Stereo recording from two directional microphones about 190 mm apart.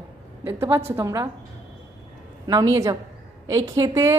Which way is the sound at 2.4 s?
20° right (ahead or behind).